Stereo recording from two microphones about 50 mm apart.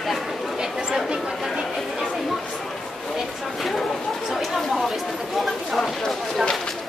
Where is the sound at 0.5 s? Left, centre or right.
Centre.